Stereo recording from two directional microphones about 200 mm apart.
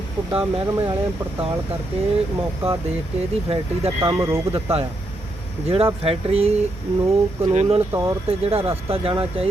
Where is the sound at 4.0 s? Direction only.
15° right (ahead or behind).